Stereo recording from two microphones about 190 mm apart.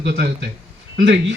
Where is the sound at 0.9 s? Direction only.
65° right (ahead or behind).